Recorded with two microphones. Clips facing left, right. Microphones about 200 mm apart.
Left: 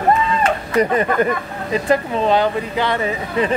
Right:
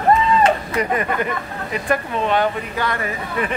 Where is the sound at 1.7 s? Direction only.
30° left (ahead or behind).